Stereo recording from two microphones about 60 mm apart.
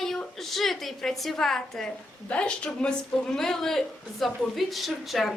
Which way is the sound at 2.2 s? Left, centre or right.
Centre.